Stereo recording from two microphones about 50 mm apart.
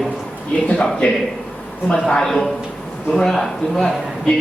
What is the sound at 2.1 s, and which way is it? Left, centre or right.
Speech, centre.